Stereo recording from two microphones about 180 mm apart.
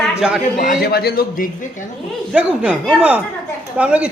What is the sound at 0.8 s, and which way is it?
Speech, 60° left (ahead or behind).